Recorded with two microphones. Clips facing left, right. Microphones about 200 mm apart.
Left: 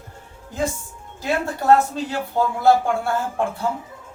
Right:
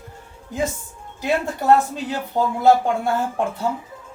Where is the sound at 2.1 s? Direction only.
15° right (ahead or behind).